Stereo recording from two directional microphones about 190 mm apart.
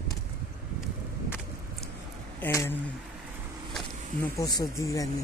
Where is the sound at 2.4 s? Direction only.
10° left (ahead or behind).